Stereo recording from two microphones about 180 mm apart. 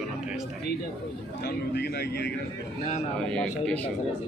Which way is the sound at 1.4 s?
65° left (ahead or behind).